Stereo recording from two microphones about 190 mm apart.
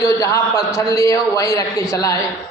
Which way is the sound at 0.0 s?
15° left (ahead or behind).